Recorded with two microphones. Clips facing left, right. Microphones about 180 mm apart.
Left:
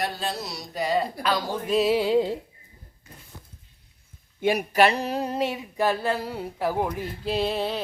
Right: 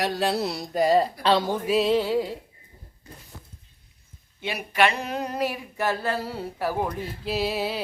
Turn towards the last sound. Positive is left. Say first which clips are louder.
# left 1 dB
turn(degrees=-5)  # may be behind; listen again after turning